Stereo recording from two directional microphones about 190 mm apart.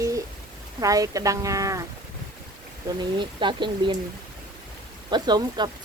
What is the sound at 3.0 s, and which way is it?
Speech, 25° right (ahead or behind).